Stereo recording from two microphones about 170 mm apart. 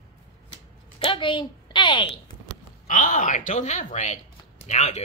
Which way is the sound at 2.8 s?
50° left (ahead or behind).